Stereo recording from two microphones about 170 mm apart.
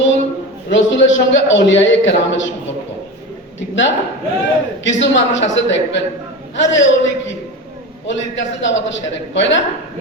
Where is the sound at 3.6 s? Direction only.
90° left.